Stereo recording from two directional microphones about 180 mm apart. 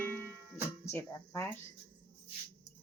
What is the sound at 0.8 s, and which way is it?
Speech, 15° left (ahead or behind).